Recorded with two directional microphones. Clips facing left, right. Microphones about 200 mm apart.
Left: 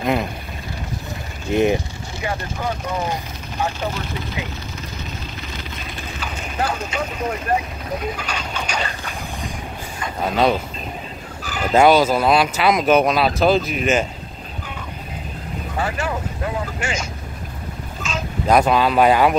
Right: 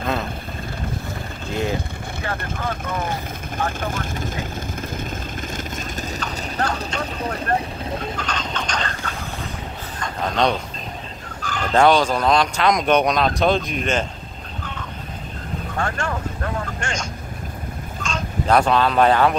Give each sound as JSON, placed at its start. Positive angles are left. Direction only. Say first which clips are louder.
{"t": 0.0, "sound": "speech", "louder": "left 4 dB", "side_deg": 15}
{"t": 1.5, "sound": "speech", "louder": "left 7 dB", "side_deg": 20}
{"t": 3.6, "sound": "speech", "louder": "left 2 dB", "side_deg": -50}
{"t": 5.6, "sound": "a sound", "louder": "right 3 dB", "side_deg": -45}
{"t": 6.2, "sound": "speech", "louder": "left 2 dB", "side_deg": 5}
{"t": 9.9, "sound": "a sound", "louder": "left 2 dB", "side_deg": 5}
{"t": 11.4, "sound": "speech", "louder": "left 2 dB", "side_deg": 10}
{"t": 15.7, "sound": "speech", "louder": "left 2 dB", "side_deg": 10}